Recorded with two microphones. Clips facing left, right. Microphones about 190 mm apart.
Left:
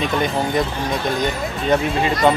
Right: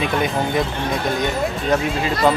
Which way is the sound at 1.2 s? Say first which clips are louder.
Right 1 dB; centre (ahead or behind).